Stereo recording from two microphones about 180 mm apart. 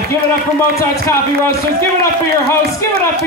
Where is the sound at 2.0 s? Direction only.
15° left (ahead or behind).